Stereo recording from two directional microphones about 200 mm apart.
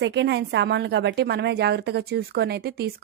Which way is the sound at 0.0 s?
60° right (ahead or behind).